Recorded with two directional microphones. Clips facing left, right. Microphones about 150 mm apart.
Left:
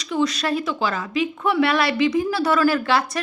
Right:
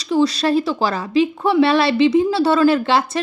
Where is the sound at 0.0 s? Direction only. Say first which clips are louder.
Right 5 dB; 30° right (ahead or behind).